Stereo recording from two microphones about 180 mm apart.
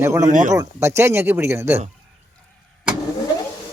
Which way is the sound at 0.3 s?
45° right (ahead or behind).